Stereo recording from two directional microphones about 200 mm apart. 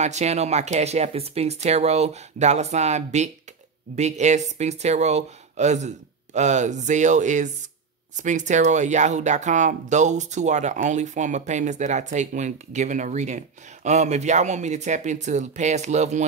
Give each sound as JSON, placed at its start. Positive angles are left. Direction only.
{"t": 0.0, "sound": "speech", "side_deg": -35}